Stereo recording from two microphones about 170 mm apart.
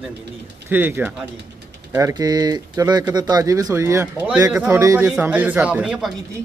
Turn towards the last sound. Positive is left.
turn(degrees=-5)  # may be behind; listen again after turning